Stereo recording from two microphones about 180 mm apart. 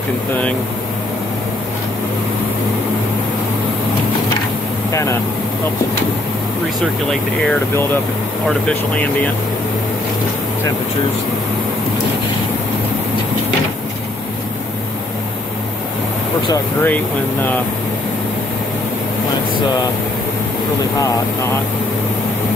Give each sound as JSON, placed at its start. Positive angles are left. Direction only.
{"t": 4.9, "sound": "speech", "side_deg": 15}
{"t": 8.5, "sound": "speech", "side_deg": 5}
{"t": 16.8, "sound": "speech", "side_deg": 10}